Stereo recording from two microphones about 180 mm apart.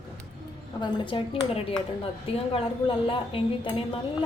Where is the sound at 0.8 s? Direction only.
30° left (ahead or behind).